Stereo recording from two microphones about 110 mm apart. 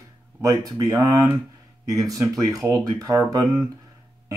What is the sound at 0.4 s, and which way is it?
Speech, 30° right (ahead or behind).